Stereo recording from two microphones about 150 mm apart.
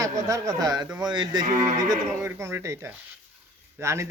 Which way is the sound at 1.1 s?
30° right (ahead or behind).